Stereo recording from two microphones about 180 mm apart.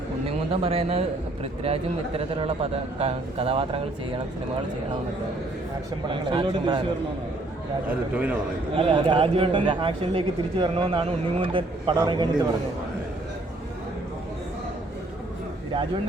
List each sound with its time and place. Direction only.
0.3 s a man's voice: 35° right (ahead or behind)
6.1 s a man's voice: 25° right (ahead or behind)
8.1 s a man's voice: 10° right (ahead or behind)
8.7 s a man's voice: 30° right (ahead or behind)